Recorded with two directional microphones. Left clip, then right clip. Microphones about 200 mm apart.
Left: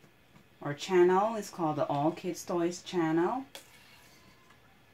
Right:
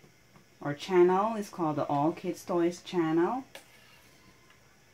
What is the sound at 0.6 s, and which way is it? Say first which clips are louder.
Speech: right 1 dB; 25° right (ahead or behind).